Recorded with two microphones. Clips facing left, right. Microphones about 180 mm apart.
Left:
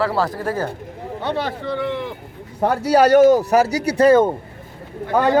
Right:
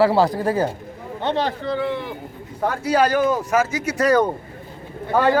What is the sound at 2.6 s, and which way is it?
A man's voice, 40° left (ahead or behind).